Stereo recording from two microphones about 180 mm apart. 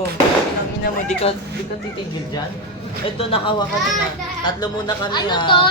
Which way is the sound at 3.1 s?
30° left (ahead or behind).